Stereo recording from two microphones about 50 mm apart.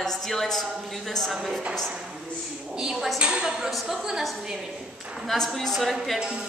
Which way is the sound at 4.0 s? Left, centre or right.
Centre.